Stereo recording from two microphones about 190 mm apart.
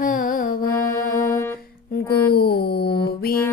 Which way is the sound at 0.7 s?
15° left (ahead or behind).